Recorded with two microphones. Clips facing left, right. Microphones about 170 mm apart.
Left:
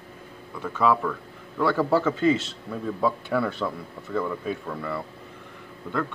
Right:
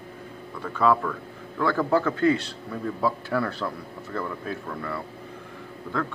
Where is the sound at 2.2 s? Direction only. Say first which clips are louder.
Even; 20° left (ahead or behind).